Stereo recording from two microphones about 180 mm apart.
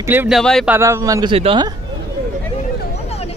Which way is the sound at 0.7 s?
15° right (ahead or behind).